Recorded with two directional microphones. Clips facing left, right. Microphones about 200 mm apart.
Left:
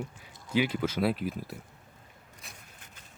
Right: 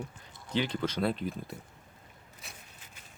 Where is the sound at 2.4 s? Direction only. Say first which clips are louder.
Right 1 dB; centre (ahead or behind).